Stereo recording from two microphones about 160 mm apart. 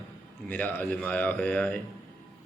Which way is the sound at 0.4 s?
10° left (ahead or behind).